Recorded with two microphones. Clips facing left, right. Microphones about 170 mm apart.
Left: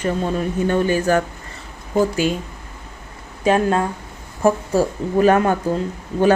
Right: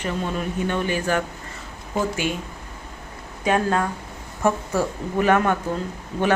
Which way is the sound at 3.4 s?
25° left (ahead or behind).